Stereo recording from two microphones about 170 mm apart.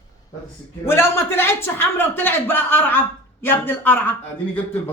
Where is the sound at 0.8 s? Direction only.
15° left (ahead or behind).